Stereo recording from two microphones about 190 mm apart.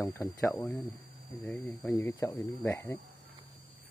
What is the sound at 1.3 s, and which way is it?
Speech, centre (ahead or behind).